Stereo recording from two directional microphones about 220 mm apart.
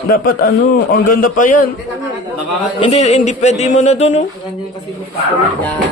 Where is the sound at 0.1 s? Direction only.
40° left (ahead or behind).